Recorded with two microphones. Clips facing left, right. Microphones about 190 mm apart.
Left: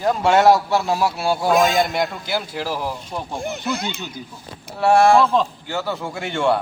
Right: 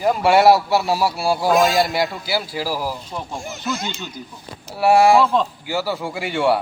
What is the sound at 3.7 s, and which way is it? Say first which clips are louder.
Speech: left 1 dB; 60° left (ahead or behind).